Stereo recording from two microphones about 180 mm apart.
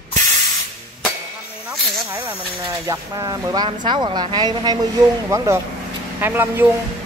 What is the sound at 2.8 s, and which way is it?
Speech, 20° right (ahead or behind).